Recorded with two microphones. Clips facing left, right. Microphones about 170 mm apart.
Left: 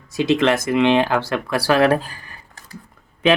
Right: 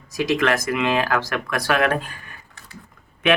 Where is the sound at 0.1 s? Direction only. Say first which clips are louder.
Left 3 dB; 25° left (ahead or behind).